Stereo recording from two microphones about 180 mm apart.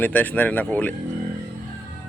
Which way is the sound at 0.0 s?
10° left (ahead or behind).